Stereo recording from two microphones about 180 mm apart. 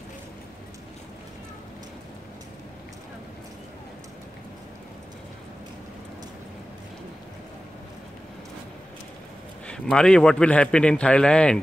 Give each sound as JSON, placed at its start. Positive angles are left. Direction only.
{"t": 9.7, "sound": "a man's voice", "side_deg": 5}